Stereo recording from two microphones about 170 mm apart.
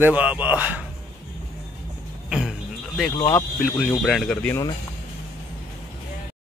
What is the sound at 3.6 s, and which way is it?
Speech, centre (ahead or behind).